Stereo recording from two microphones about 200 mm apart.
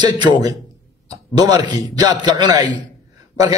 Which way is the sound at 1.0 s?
20° right (ahead or behind).